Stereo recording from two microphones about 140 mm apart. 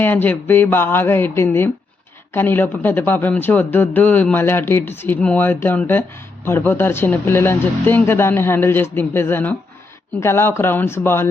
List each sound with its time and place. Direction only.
0.0 s speech: 15° left (ahead or behind)